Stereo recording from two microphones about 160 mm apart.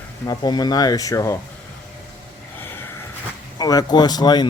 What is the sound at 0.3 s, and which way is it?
Speech, 25° left (ahead or behind).